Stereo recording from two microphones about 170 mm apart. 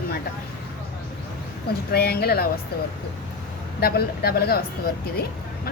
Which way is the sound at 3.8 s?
65° left (ahead or behind).